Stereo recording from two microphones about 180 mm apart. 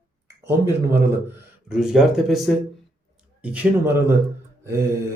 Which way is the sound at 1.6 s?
5° right (ahead or behind).